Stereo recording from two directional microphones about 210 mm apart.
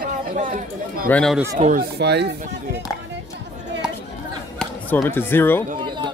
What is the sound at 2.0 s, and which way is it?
Speech, 55° right (ahead or behind).